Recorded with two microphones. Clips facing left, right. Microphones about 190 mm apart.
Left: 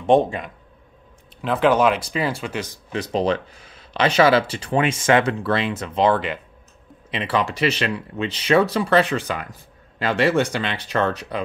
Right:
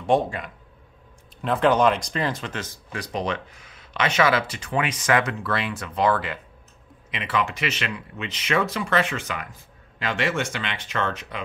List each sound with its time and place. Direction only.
0.0 s speech: 20° left (ahead or behind)
1.4 s speech: centre (ahead or behind)
2.9 s speech: 25° left (ahead or behind)
7.1 s speech: 35° left (ahead or behind)